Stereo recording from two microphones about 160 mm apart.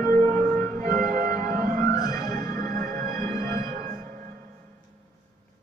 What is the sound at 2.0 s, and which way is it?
Music, 20° left (ahead or behind).